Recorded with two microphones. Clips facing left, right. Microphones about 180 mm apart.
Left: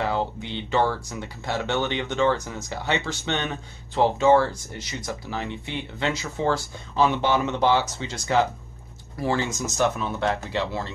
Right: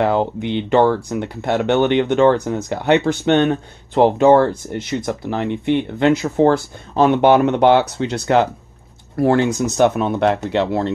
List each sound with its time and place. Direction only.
0.0 s speech: 60° right (ahead or behind)